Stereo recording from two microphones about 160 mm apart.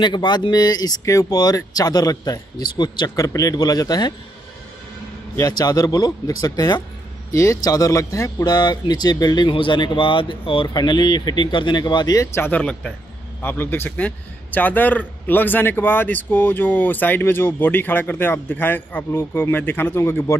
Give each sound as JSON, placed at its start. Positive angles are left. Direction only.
{"t": 0.0, "sound": "speech", "side_deg": 30}
{"t": 5.3, "sound": "a man's voice", "side_deg": 20}